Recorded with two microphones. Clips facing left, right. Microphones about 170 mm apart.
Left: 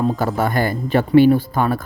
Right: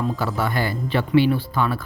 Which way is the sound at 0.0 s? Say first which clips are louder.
Left 5 dB; 45° left (ahead or behind).